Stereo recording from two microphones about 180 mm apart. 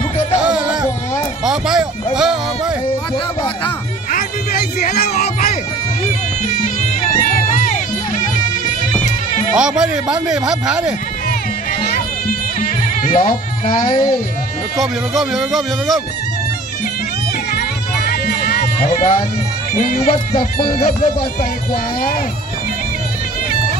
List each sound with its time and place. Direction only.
1.4 s a sound: 5° right (ahead or behind)
4.1 s a sound: 50° left (ahead or behind)
6.4 s music: 45° left (ahead or behind)
9.6 s speech: 5° right (ahead or behind)
12.6 s speech: 50° left (ahead or behind)
14.8 s speech: centre (ahead or behind)
17.6 s music: 60° left (ahead or behind)
18.6 s speech: 35° left (ahead or behind)